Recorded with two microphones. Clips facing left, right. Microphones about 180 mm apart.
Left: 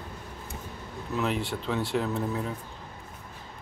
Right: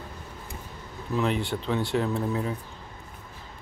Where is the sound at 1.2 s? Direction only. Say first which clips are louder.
Right 2 dB; centre (ahead or behind).